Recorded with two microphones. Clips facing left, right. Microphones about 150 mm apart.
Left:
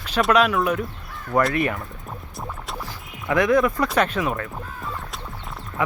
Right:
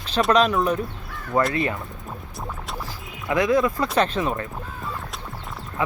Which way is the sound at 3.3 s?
20° right (ahead or behind).